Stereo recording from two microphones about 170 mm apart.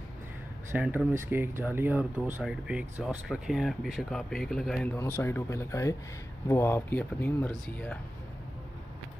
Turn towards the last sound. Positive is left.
turn(degrees=5)  # may be behind; listen again after turning